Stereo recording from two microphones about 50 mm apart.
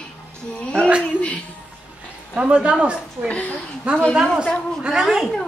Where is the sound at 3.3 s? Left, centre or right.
Left.